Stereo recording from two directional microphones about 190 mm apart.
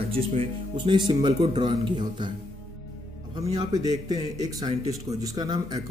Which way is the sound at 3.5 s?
20° right (ahead or behind).